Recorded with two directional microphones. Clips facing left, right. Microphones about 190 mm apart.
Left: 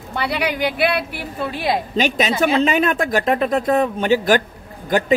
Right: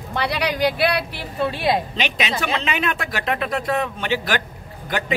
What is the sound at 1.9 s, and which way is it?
Speech, 45° left (ahead or behind).